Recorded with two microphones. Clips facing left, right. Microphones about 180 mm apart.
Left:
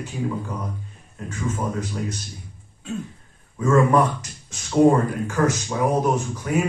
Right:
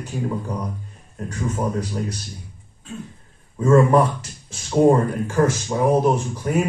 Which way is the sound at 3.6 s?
30° right (ahead or behind).